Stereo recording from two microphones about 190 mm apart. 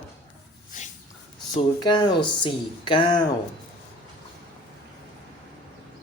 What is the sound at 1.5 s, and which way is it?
Speech, 25° left (ahead or behind).